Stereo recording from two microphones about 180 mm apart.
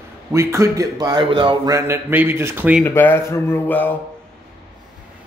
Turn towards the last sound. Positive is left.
turn(degrees=10)  # may be behind; listen again after turning